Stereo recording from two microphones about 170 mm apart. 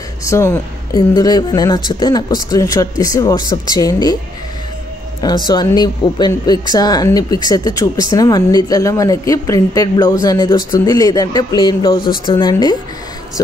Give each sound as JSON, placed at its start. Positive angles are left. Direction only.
{"t": 0.2, "sound": "speech", "side_deg": 15}
{"t": 5.2, "sound": "speech", "side_deg": 25}